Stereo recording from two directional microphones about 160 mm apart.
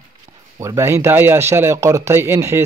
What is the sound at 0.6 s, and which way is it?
Speech, 15° right (ahead or behind).